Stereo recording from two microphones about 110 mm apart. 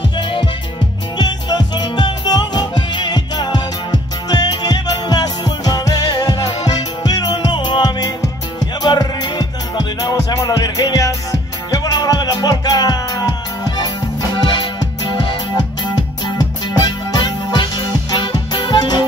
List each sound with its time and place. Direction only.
0.2 s music: 45° left (ahead or behind)